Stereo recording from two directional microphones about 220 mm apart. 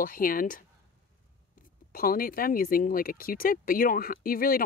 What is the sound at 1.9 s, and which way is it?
Speech, 40° left (ahead or behind).